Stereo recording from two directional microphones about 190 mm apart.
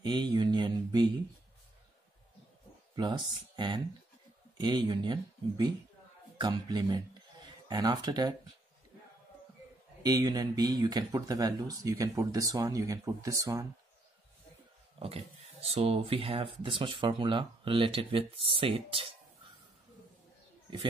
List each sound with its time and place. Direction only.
0.0 s mantra: 25° right (ahead or behind)
3.0 s speech: 25° right (ahead or behind)
10.0 s speech: 20° right (ahead or behind)
15.0 s speech: 30° right (ahead or behind)